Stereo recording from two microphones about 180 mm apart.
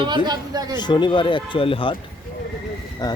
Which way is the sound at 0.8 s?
25° left (ahead or behind).